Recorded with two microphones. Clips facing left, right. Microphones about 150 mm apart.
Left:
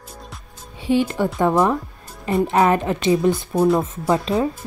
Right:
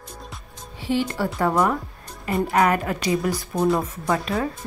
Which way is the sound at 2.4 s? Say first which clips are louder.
Left 2 dB; 25° left (ahead or behind).